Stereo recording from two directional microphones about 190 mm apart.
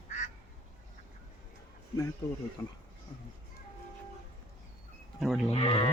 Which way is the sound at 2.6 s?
15° left (ahead or behind).